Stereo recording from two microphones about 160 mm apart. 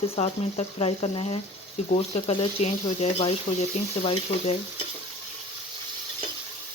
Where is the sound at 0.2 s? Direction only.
40° left (ahead or behind).